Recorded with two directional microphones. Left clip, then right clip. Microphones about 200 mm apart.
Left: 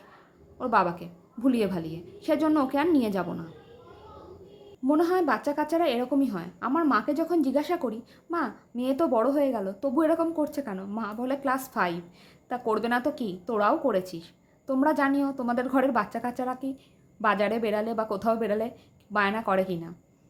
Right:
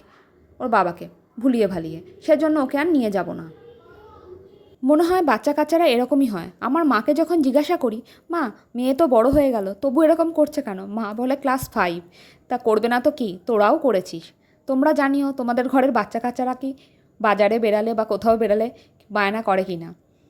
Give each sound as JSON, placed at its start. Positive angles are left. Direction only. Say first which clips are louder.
{"t": 0.6, "sound": "a woman's voice", "louder": "right 5 dB", "side_deg": -25}
{"t": 4.9, "sound": "a woman's voice", "louder": "right 7 dB", "side_deg": -40}